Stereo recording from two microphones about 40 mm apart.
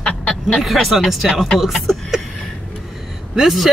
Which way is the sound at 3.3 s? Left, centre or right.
Centre.